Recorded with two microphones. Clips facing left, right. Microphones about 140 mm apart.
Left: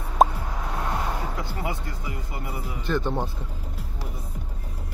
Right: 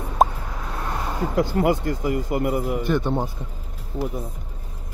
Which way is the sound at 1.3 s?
60° right (ahead or behind).